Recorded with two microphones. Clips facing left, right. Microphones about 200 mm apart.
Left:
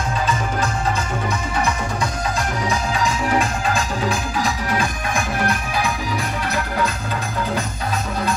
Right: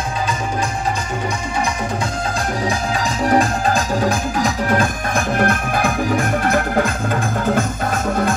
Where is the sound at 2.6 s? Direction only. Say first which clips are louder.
Right 1 dB; 35° right (ahead or behind).